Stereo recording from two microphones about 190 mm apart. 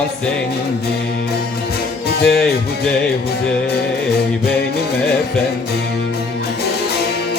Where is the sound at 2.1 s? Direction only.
55° left (ahead or behind).